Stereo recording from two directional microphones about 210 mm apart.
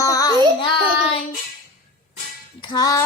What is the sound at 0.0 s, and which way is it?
Child singing, 15° left (ahead or behind).